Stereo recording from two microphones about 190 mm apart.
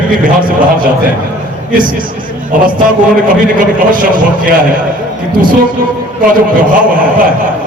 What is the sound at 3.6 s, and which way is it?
Speech, 45° right (ahead or behind).